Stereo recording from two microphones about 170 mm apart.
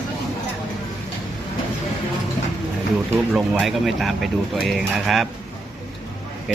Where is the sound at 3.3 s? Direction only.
5° right (ahead or behind).